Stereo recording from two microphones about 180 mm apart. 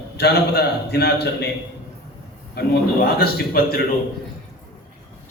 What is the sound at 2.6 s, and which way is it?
A man's voice, 60° left (ahead or behind).